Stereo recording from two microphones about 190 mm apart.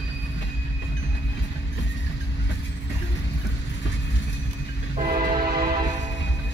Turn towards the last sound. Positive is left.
turn(degrees=-50)  # may be behind; listen again after turning